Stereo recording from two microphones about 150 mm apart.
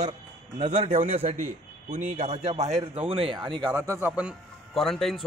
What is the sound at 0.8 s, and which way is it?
A man's voice, 50° right (ahead or behind).